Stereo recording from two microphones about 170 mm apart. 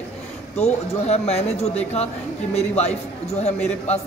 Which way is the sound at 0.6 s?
40° left (ahead or behind).